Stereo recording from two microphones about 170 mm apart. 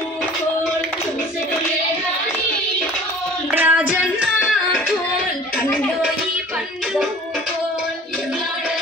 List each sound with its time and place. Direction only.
3.5 s female singing: 10° right (ahead or behind)